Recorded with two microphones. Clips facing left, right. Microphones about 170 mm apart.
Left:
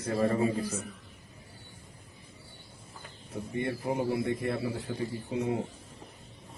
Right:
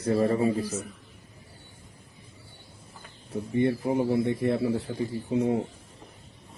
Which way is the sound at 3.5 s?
25° right (ahead or behind).